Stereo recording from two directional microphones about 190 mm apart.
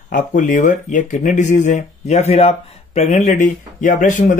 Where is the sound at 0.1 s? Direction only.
45° left (ahead or behind).